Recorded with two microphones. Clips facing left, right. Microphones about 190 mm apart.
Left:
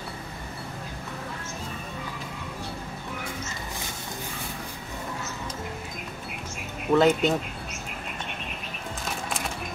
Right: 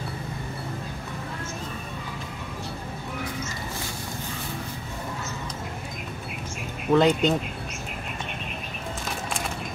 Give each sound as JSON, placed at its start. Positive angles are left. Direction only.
{"t": 6.9, "sound": "speech", "side_deg": 5}